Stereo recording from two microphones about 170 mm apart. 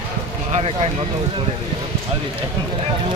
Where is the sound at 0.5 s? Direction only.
35° right (ahead or behind).